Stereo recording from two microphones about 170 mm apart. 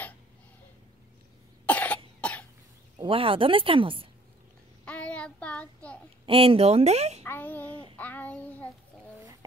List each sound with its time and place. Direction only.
1.7 s cough: 10° left (ahead or behind)
3.0 s speech: 35° right (ahead or behind)
4.8 s child singing: 5° left (ahead or behind)
6.2 s speech: 35° right (ahead or behind)
7.2 s child singing: 10° left (ahead or behind)